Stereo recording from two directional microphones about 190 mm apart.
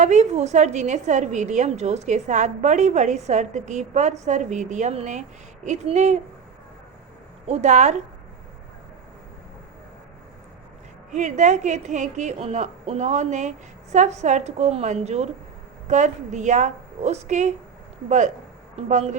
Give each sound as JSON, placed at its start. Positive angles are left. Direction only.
{"t": 0.0, "sound": "a woman's voice", "side_deg": -40}
{"t": 7.4, "sound": "a woman's voice", "side_deg": -35}
{"t": 11.1, "sound": "a woman's voice", "side_deg": -40}
{"t": 18.8, "sound": "a woman's voice", "side_deg": -35}